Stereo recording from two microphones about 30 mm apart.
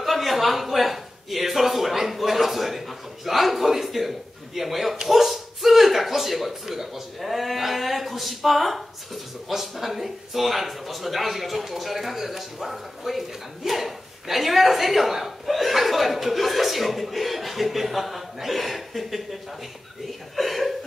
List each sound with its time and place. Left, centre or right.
0.0 s a man's voice: centre
20.3 s speech: centre